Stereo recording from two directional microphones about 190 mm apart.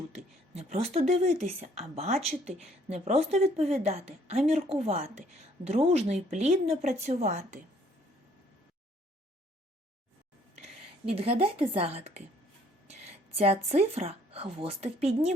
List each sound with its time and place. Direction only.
0.2 s speech: 35° right (ahead or behind)
11.1 s speech: 30° right (ahead or behind)